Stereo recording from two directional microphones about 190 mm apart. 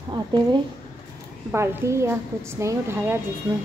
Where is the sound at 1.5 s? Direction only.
15° right (ahead or behind).